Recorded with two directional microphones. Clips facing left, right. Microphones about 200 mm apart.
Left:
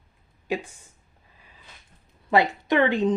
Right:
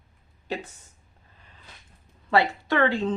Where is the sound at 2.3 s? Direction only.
20° left (ahead or behind).